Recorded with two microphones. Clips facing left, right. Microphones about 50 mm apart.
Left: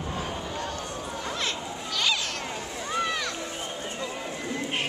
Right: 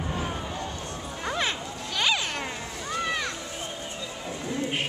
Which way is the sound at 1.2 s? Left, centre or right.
Centre.